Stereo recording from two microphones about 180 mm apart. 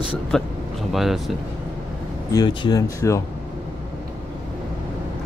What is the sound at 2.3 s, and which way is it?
Speech, 25° left (ahead or behind).